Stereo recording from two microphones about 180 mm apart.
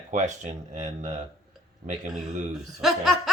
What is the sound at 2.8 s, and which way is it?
Laughter, centre (ahead or behind).